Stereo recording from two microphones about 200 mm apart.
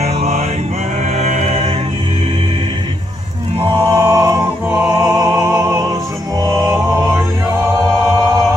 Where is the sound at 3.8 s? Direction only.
15° right (ahead or behind).